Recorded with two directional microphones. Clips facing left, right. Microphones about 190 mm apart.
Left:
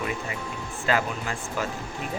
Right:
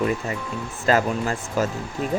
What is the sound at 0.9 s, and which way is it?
Speech, 40° right (ahead or behind).